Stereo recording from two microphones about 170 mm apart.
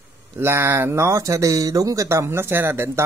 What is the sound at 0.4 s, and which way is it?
Speech, 15° right (ahead or behind).